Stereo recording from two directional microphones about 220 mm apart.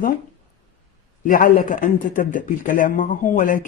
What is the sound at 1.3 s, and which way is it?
Speech, 40° left (ahead or behind).